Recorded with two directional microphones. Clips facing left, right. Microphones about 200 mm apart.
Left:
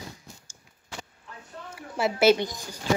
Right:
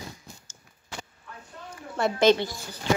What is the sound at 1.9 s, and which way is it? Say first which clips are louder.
Speech: even; 5° left (ahead or behind).